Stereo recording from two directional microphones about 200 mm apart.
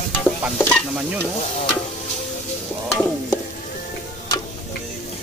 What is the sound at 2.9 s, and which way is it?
Stir, 5° left (ahead or behind).